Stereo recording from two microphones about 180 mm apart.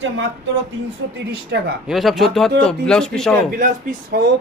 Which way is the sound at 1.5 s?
70° right (ahead or behind).